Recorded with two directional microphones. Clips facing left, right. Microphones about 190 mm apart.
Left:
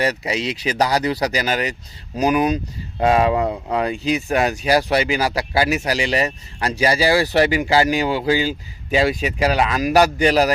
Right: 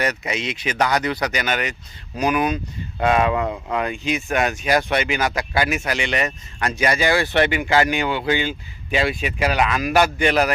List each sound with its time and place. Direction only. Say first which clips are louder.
0.0 s speech: left 3 dB; 30° left (ahead or behind)